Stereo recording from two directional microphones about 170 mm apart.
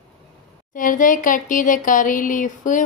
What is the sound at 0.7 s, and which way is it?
A woman's voice, 50° left (ahead or behind).